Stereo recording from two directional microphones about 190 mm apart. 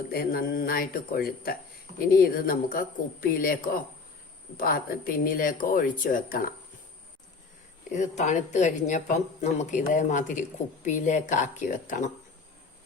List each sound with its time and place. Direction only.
0.1 s speech: 50° left (ahead or behind)
7.9 s speech: 40° left (ahead or behind)